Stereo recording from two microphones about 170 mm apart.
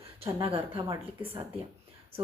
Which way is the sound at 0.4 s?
30° right (ahead or behind).